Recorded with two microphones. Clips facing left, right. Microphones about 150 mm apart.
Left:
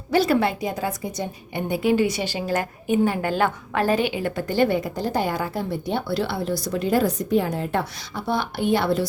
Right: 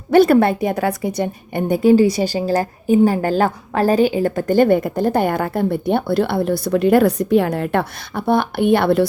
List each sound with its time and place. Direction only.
0.1 s a woman's voice: 55° right (ahead or behind)
1.6 s a woman's voice: 45° right (ahead or behind); by 9.0 s 60° right (ahead or behind)